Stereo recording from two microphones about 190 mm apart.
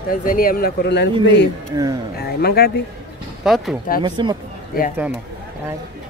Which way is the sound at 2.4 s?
55° left (ahead or behind).